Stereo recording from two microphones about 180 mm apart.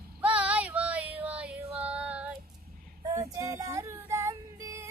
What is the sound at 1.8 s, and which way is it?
Female singing, 10° right (ahead or behind).